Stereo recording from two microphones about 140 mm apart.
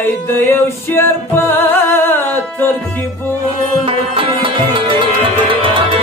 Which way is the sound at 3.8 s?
40° right (ahead or behind).